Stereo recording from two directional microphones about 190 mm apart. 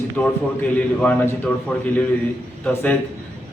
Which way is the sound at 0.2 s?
5° left (ahead or behind).